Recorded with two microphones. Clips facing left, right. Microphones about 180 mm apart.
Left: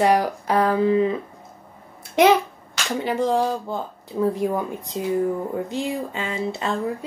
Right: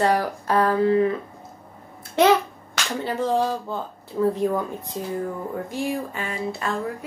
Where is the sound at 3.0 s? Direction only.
15° left (ahead or behind).